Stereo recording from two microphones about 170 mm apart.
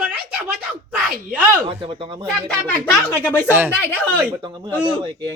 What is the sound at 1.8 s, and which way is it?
Speech, 30° right (ahead or behind).